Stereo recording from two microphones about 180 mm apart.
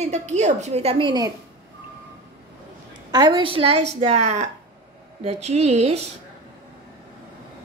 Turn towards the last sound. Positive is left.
turn(degrees=-35)  # may be behind; listen again after turning